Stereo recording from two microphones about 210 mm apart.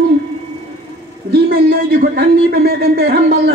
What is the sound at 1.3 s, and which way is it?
A man's voice, 45° right (ahead or behind).